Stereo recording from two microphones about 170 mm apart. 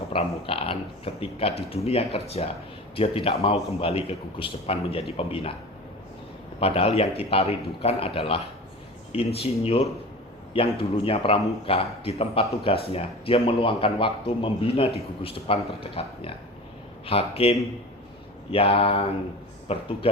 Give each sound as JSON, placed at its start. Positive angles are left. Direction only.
{"t": 0.1, "sound": "speech", "side_deg": 35}
{"t": 6.6, "sound": "speech", "side_deg": 35}